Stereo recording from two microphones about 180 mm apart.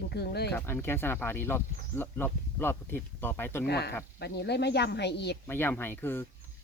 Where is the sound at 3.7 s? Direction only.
65° left (ahead or behind).